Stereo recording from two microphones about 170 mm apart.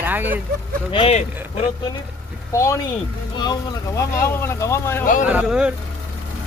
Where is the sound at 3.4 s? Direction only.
20° left (ahead or behind).